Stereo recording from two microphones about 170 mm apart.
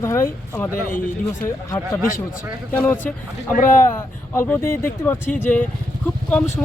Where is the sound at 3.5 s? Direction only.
50° left (ahead or behind).